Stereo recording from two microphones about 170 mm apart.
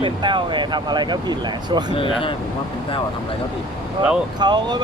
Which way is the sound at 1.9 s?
30° left (ahead or behind).